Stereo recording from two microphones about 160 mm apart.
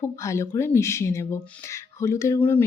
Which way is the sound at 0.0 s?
20° left (ahead or behind).